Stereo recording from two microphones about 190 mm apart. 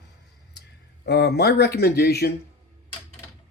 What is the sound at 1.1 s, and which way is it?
Speech, 60° left (ahead or behind).